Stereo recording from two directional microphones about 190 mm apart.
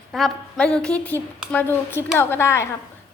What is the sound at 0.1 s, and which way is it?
A woman's voice, centre (ahead or behind).